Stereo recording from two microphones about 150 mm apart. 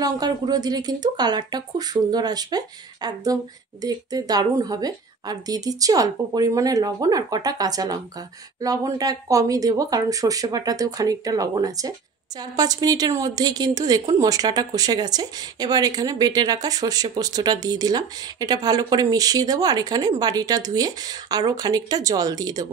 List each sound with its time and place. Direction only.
0.0 s a woman's voice: 25° right (ahead or behind)